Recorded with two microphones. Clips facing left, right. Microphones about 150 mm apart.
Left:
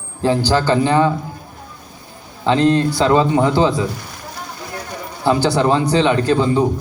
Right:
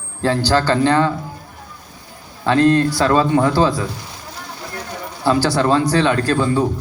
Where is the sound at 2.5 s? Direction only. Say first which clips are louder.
Even; 15° left (ahead or behind).